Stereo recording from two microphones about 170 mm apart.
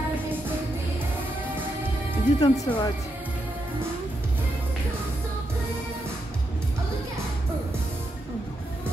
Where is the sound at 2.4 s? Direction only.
25° left (ahead or behind).